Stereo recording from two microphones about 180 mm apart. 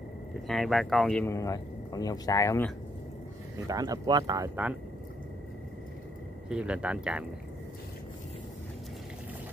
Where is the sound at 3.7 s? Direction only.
20° right (ahead or behind).